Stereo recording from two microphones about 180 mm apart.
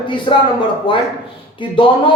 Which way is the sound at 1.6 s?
25° left (ahead or behind).